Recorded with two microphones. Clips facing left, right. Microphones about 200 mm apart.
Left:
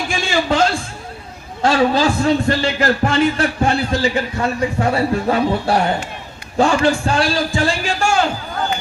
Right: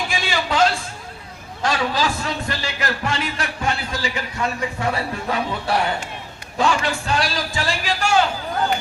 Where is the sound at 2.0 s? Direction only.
30° left (ahead or behind).